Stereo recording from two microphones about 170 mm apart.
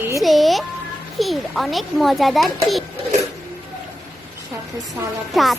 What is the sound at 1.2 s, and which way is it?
A child's voice, centre (ahead or behind).